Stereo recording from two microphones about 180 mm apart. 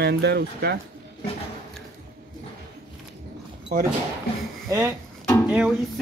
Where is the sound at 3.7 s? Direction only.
50° right (ahead or behind).